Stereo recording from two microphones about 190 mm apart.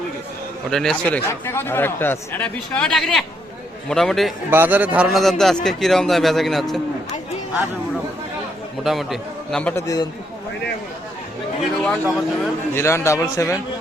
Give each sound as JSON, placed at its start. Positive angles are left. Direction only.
{"t": 0.7, "sound": "a man's voice", "side_deg": 0}
{"t": 4.5, "sound": "a man's voice", "side_deg": -10}
{"t": 8.8, "sound": "a man's voice", "side_deg": 0}
{"t": 9.8, "sound": "a man's voice", "side_deg": 20}
{"t": 11.8, "sound": "a man's voice", "side_deg": 0}
{"t": 12.7, "sound": "speech", "side_deg": 15}